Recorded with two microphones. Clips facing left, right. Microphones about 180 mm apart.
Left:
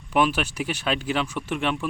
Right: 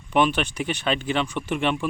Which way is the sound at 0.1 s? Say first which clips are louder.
Right 1 dB; 5° left (ahead or behind).